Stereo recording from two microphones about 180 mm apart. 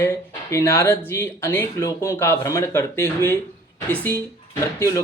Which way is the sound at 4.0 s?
10° left (ahead or behind).